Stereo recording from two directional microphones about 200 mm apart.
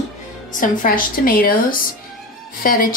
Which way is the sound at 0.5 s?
45° left (ahead or behind).